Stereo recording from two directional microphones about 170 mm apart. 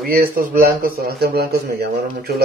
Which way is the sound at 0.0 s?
60° right (ahead or behind).